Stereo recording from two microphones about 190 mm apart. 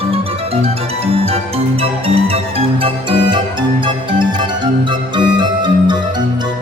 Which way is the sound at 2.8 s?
25° right (ahead or behind).